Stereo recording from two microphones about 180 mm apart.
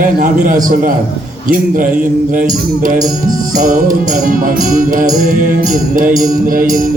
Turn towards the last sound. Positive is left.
turn(degrees=-50)  # may be behind; listen again after turning